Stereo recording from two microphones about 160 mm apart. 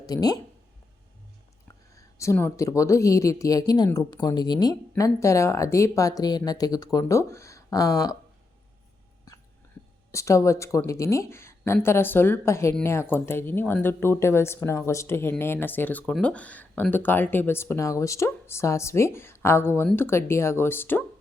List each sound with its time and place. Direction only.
0.0 s speech: 25° left (ahead or behind)
2.0 s speech: 20° left (ahead or behind)
10.1 s speech: 20° left (ahead or behind)